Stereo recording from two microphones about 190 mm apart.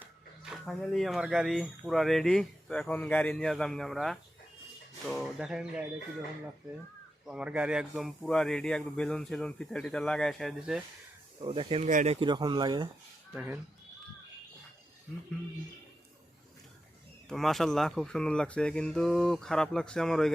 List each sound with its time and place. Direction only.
0.0 s speech: 5° right (ahead or behind)
7.3 s speech: 5° right (ahead or behind)
11.3 s speech: 30° right (ahead or behind)
13.3 s speech: 10° right (ahead or behind)
17.2 s speech: centre (ahead or behind)